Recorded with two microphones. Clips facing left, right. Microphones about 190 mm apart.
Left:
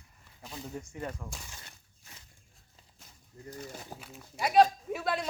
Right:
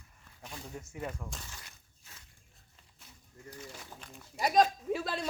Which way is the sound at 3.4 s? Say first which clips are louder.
Left 4 dB; 35° left (ahead or behind).